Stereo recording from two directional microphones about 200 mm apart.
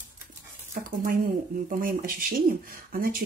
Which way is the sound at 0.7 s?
45° right (ahead or behind).